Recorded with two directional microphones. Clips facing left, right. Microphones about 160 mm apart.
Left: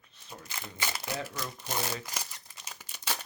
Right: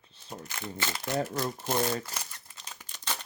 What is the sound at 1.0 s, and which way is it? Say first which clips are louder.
Speech: right 11 dB; 45° right (ahead or behind).